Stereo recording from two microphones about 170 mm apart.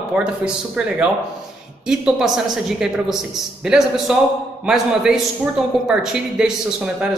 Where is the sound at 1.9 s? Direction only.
5° right (ahead or behind).